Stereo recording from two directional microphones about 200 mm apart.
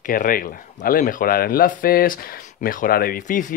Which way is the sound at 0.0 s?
45° left (ahead or behind).